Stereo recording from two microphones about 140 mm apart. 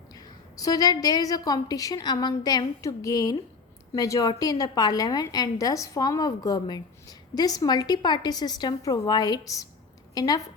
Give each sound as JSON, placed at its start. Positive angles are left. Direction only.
{"t": 0.1, "sound": "a woman's voice", "side_deg": 30}